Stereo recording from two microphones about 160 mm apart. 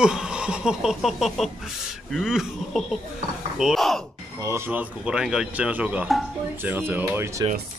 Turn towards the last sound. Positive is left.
turn(degrees=-15)  # may be behind; listen again after turning